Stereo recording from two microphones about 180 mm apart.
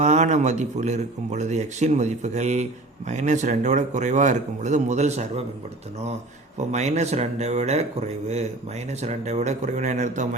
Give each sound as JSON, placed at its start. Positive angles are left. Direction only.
{"t": 0.0, "sound": "speech", "side_deg": -40}
{"t": 6.6, "sound": "speech", "side_deg": -40}